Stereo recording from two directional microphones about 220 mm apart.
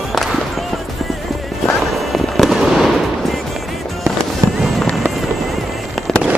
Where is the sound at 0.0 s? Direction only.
Centre (ahead or behind).